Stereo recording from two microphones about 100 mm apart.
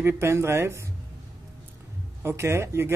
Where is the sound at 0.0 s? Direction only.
25° right (ahead or behind).